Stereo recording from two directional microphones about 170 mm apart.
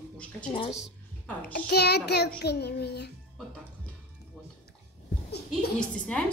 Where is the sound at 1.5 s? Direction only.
70° left (ahead or behind).